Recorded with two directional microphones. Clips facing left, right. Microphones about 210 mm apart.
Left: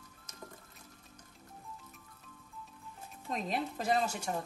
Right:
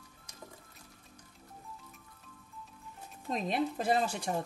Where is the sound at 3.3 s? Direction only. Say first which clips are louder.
Right 2 dB; 35° right (ahead or behind).